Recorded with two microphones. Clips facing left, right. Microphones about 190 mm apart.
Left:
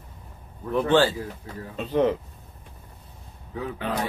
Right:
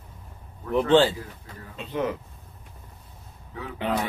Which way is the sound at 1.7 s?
30° left (ahead or behind).